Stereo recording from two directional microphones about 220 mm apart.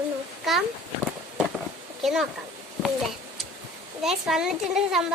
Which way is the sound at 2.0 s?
Centre (ahead or behind).